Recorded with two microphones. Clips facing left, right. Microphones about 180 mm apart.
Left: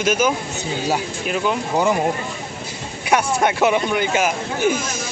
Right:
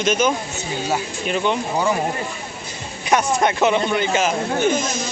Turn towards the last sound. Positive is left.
turn(degrees=10)  # may be behind; listen again after turning